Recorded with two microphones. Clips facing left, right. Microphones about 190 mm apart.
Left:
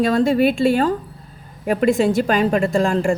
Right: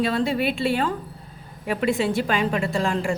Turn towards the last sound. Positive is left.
turn(degrees=45)  # may be behind; listen again after turning